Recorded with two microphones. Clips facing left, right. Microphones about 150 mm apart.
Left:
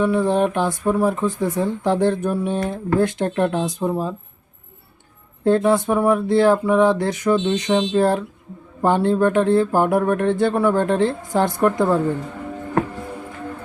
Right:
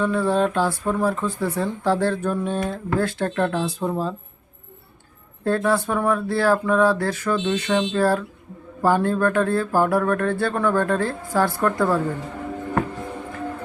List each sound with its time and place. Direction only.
0.0 s speech: 15° left (ahead or behind)
5.5 s speech: 20° left (ahead or behind)